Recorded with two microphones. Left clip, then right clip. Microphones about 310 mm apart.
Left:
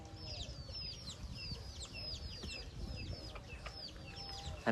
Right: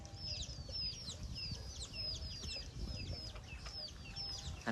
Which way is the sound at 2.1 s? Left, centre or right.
Left.